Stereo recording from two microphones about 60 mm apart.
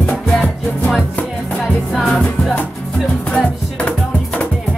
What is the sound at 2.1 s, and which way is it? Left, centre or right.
Music, centre.